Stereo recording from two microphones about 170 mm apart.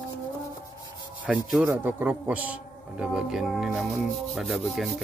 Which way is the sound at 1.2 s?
5° right (ahead or behind).